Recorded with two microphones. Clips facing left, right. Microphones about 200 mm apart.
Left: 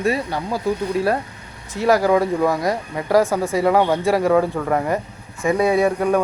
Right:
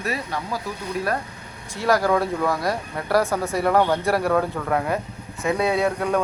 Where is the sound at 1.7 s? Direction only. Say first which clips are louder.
Left 4 dB; 15° left (ahead or behind).